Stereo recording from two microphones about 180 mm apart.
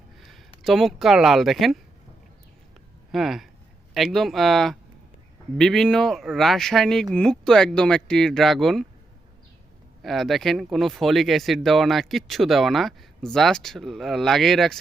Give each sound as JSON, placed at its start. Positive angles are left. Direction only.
{"t": 0.2, "sound": "speech", "side_deg": 0}
{"t": 3.1, "sound": "speech", "side_deg": 0}
{"t": 10.0, "sound": "speech", "side_deg": 0}